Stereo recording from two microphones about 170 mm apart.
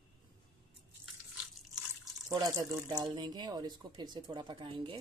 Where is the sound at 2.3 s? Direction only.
20° right (ahead or behind).